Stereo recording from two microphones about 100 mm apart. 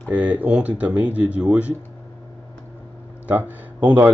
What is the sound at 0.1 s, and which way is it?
Speech, 15° right (ahead or behind).